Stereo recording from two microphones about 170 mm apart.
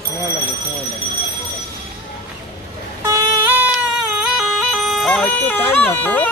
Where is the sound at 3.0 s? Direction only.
20° right (ahead or behind).